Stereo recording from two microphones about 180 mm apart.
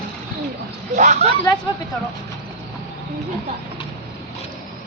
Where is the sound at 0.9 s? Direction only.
40° right (ahead or behind).